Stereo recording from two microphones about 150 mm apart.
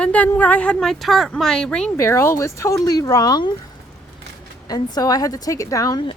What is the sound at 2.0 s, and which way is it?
A woman's voice, 20° left (ahead or behind).